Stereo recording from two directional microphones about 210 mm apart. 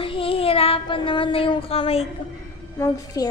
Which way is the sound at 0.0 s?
25° left (ahead or behind).